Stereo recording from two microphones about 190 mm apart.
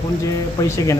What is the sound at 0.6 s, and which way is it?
Speech, 15° left (ahead or behind).